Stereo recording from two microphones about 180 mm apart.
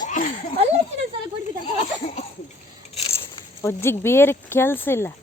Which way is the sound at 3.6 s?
15° left (ahead or behind).